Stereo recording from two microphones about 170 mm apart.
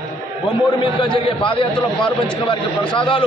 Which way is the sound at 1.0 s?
30° left (ahead or behind).